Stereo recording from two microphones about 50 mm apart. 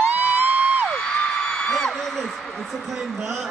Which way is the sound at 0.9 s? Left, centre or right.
Centre.